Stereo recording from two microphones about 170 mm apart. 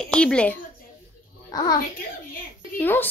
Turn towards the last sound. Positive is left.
turn(degrees=10)  # may be behind; listen again after turning